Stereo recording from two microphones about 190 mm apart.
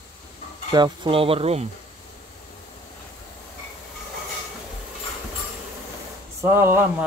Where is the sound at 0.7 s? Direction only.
25° right (ahead or behind).